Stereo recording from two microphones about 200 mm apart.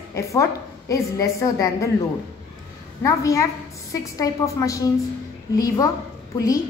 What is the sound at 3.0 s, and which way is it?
A woman's voice, 15° left (ahead or behind).